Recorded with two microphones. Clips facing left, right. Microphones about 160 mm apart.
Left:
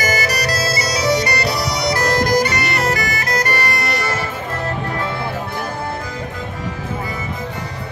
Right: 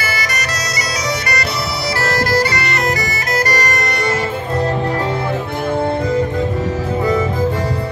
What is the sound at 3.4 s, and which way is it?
Bagpipes, 40° right (ahead or behind).